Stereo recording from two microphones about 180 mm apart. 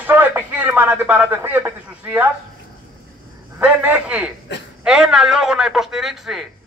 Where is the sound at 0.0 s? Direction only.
10° right (ahead or behind).